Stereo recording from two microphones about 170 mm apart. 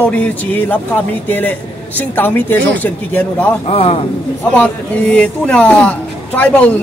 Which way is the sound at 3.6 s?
35° left (ahead or behind).